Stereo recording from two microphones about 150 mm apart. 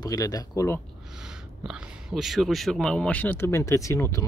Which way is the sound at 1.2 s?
5° right (ahead or behind).